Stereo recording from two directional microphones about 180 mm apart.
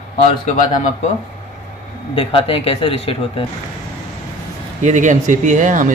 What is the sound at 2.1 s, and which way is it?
Speech, 30° left (ahead or behind).